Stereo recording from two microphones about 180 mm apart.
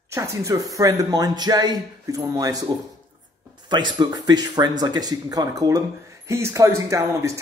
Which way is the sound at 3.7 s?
25° right (ahead or behind).